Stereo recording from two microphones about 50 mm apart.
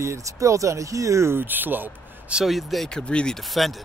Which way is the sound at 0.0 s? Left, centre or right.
Right.